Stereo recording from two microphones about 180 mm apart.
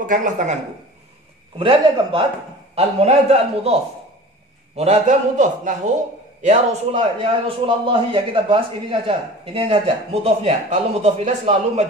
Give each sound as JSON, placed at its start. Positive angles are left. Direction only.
{"t": 0.0, "sound": "a man's voice", "side_deg": -45}
{"t": 1.6, "sound": "a man's voice", "side_deg": -30}